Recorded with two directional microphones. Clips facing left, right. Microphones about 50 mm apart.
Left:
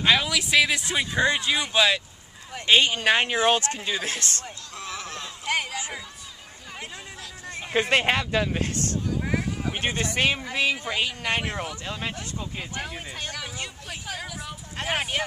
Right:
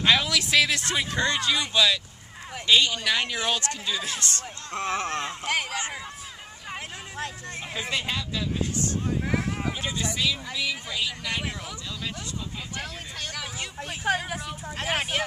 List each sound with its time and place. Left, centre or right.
0.0 s speech: centre; by 4.2 s left
4.7 s a sound: right
5.5 s a sound: centre
7.9 s speech: left
9.2 s a sound: centre
9.7 s speech: left
12.7 s speech: centre
13.8 s speech: right
14.4 s speech: centre